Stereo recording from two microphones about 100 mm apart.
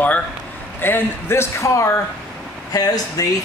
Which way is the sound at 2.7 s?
40° left (ahead or behind).